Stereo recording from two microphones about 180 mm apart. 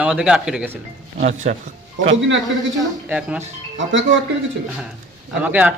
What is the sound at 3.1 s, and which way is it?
Speech, 10° right (ahead or behind).